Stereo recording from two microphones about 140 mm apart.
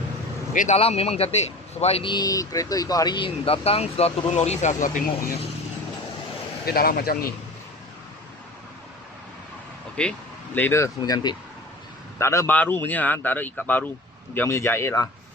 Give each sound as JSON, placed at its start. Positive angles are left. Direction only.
{"t": 0.5, "sound": "speech", "side_deg": 65}
{"t": 0.8, "sound": "speech", "side_deg": 45}
{"t": 6.7, "sound": "speech", "side_deg": 90}
{"t": 10.0, "sound": "speech", "side_deg": 10}